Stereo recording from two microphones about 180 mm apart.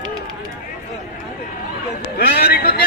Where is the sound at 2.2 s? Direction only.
60° left (ahead or behind).